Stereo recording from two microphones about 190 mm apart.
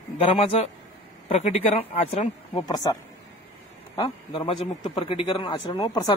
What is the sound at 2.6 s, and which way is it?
A man's voice, 20° left (ahead or behind).